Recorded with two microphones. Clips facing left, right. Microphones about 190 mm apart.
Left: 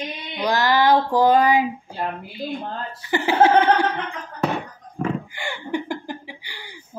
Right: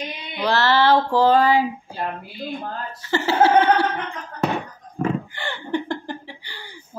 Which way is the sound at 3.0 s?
15° left (ahead or behind).